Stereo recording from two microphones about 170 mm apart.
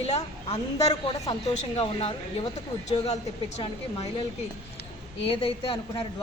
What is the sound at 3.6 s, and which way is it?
Speech, 30° left (ahead or behind).